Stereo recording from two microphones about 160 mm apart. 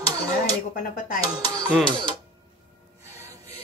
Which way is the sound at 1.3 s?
25° right (ahead or behind).